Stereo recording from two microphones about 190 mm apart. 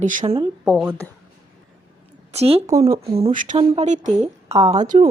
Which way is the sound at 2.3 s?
35° right (ahead or behind).